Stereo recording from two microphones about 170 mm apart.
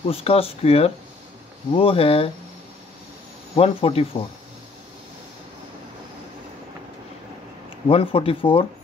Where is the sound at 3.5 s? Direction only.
35° left (ahead or behind).